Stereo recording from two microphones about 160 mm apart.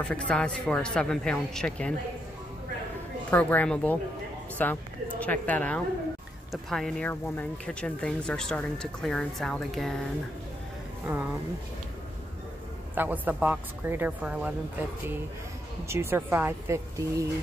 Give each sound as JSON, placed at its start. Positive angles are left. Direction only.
{"t": 0.0, "sound": "speech", "side_deg": 5}
{"t": 3.3, "sound": "speech", "side_deg": 10}
{"t": 12.9, "sound": "speech", "side_deg": -10}
{"t": 15.9, "sound": "speech", "side_deg": -15}